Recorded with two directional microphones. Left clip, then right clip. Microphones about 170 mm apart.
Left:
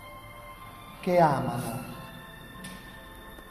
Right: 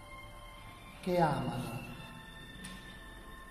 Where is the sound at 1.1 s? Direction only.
15° left (ahead or behind).